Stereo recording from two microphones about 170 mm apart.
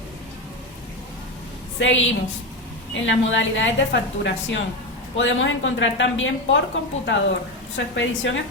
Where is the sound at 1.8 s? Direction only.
90° left.